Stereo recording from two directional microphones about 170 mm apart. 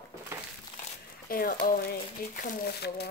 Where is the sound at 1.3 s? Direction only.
55° left (ahead or behind).